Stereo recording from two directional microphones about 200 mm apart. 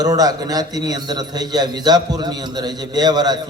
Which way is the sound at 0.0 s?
20° right (ahead or behind).